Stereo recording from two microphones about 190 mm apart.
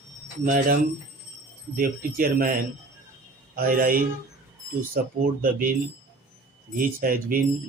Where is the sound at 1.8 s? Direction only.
50° right (ahead or behind).